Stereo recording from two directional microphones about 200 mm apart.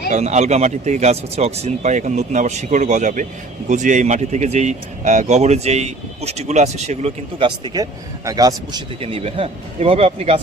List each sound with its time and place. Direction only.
0.1 s speech: 35° right (ahead or behind); by 8.8 s 20° right (ahead or behind)
9.0 s speech: 30° right (ahead or behind)